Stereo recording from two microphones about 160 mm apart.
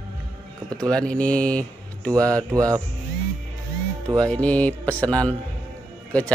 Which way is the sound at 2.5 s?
20° right (ahead or behind).